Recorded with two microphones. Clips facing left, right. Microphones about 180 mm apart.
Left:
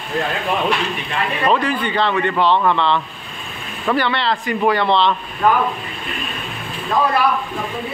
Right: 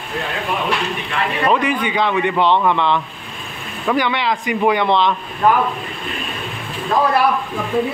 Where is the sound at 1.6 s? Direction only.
15° right (ahead or behind).